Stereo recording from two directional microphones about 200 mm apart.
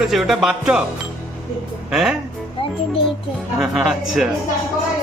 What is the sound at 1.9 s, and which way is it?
Speech, centre (ahead or behind).